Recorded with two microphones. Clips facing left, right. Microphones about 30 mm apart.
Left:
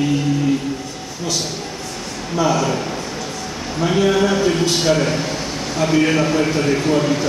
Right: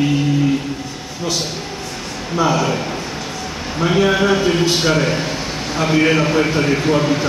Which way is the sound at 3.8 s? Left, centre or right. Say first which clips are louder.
Right 1 dB; centre.